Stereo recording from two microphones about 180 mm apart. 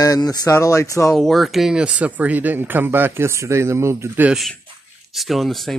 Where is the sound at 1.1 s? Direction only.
Centre (ahead or behind).